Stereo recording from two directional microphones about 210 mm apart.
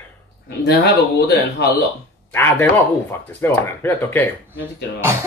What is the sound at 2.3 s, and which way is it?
Speech, 10° left (ahead or behind).